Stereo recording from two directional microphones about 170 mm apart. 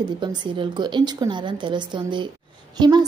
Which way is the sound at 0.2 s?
25° right (ahead or behind).